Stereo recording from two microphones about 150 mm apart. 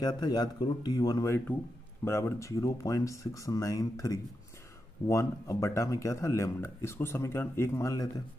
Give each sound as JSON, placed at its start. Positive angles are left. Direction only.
{"t": 0.0, "sound": "speech", "side_deg": 25}